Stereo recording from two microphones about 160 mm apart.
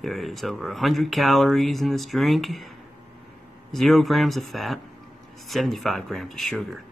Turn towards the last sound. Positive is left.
turn(degrees=0)  # may be behind; listen again after turning